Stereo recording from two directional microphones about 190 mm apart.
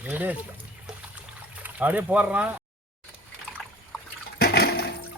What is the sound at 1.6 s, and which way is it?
Speech, 10° right (ahead or behind).